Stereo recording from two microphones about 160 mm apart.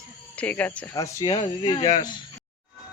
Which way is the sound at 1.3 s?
35° left (ahead or behind).